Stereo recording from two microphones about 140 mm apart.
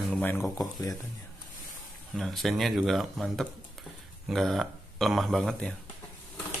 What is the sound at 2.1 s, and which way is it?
Speech, centre (ahead or behind).